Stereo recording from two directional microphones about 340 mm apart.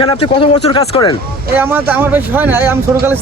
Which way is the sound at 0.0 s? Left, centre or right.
Centre.